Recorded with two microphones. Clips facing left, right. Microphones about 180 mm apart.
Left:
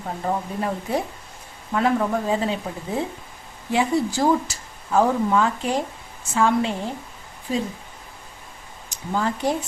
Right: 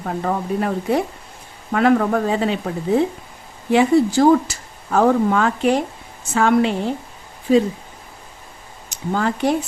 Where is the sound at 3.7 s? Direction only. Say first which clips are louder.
Right 7 dB; 65° right (ahead or behind).